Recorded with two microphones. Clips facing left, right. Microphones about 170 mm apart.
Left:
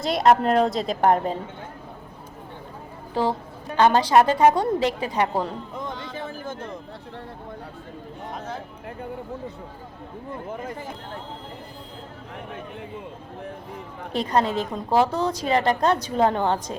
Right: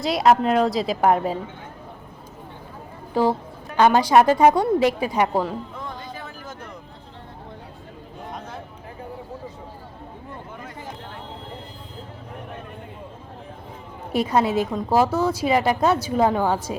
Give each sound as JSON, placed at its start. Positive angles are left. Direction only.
{"t": 0.0, "sound": "a woman's voice", "side_deg": 0}
{"t": 3.1, "sound": "a woman's voice", "side_deg": -10}
{"t": 6.1, "sound": "a sound", "side_deg": 30}
{"t": 14.1, "sound": "a woman's voice", "side_deg": -10}